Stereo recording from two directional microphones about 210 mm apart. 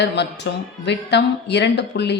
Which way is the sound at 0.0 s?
55° left (ahead or behind).